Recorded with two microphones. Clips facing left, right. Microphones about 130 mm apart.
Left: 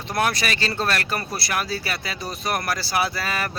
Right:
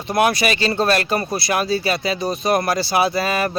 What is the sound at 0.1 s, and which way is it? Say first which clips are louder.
Speech: right 6 dB; 15° right (ahead or behind).